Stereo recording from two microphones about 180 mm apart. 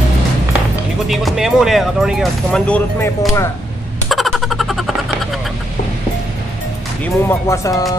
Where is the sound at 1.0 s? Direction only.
Centre (ahead or behind).